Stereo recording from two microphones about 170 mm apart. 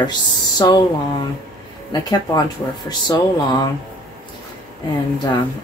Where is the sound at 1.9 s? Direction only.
25° left (ahead or behind).